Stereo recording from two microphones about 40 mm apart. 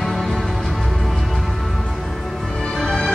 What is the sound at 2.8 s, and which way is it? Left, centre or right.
Music, centre.